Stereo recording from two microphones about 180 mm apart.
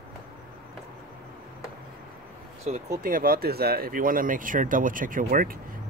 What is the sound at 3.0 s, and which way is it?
Speech, 50° right (ahead or behind).